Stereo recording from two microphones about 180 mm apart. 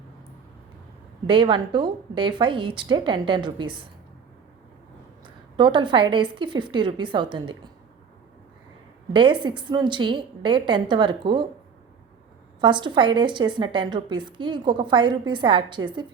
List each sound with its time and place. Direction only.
1.3 s a woman's voice: 30° right (ahead or behind)
5.2 s a woman's voice: 25° right (ahead or behind)
9.1 s a woman's voice: 25° right (ahead or behind)
12.5 s a woman's voice: 25° right (ahead or behind)